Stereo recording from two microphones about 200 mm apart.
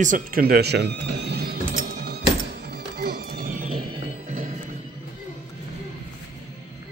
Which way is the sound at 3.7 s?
25° right (ahead or behind).